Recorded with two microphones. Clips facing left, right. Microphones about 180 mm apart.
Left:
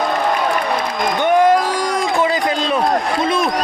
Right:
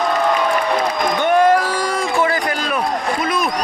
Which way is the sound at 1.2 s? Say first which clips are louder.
Left 1 dB; 15° left (ahead or behind).